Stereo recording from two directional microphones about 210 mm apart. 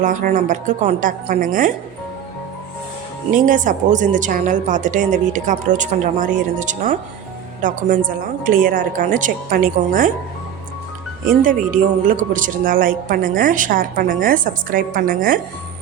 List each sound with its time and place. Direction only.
0.0 s speech: 40° right (ahead or behind)
3.3 s speech: 40° right (ahead or behind)
11.4 s speech: 40° right (ahead or behind)